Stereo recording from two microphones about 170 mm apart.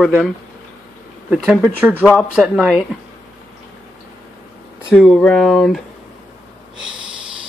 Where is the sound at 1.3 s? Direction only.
10° right (ahead or behind).